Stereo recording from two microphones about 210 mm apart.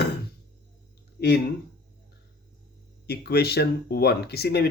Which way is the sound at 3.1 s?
50° left (ahead or behind).